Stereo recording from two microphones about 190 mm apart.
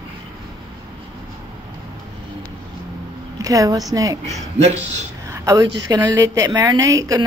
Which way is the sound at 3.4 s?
20° right (ahead or behind).